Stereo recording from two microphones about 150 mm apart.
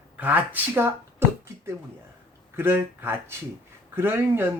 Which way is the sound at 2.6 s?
15° right (ahead or behind).